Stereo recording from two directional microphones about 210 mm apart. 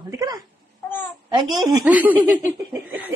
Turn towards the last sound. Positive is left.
turn(degrees=-10)  # may be behind; listen again after turning